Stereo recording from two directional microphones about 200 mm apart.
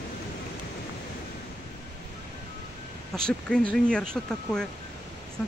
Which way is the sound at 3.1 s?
5° left (ahead or behind).